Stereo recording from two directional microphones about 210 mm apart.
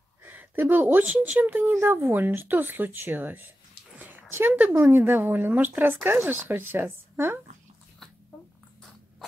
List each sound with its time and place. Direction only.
0.2 s speech: 10° right (ahead or behind)